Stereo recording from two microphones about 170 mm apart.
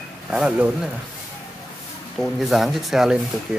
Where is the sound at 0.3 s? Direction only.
5° right (ahead or behind).